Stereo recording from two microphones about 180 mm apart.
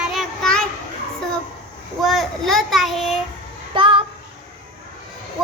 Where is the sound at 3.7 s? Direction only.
30° right (ahead or behind).